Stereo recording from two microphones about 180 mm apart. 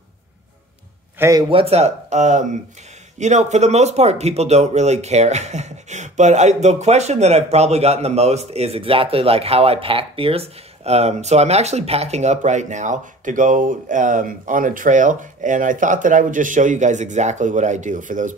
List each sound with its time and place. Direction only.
1.5 s speech: 35° right (ahead or behind)